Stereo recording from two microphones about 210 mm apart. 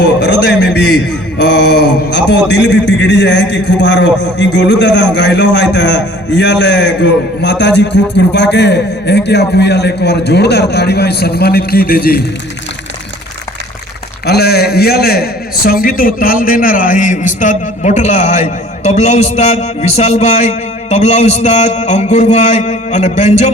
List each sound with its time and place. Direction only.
0.0 s a man's voice: 50° left (ahead or behind)
14.3 s a man's voice: 50° left (ahead or behind); by 23.5 s 35° left (ahead or behind)